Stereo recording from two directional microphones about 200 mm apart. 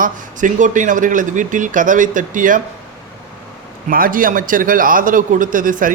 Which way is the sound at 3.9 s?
45° right (ahead or behind).